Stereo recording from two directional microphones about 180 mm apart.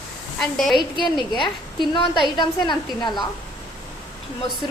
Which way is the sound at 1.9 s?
25° left (ahead or behind).